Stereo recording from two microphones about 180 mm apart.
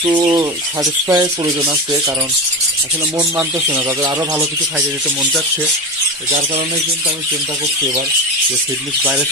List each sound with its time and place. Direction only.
0.0 s speech: 20° right (ahead or behind)
3.3 s speech: 15° right (ahead or behind)